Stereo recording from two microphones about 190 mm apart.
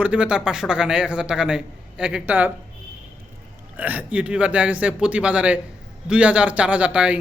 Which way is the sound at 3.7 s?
10° right (ahead or behind).